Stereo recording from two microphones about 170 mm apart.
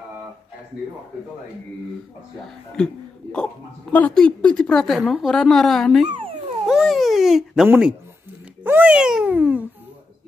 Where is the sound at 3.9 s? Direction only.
5° left (ahead or behind).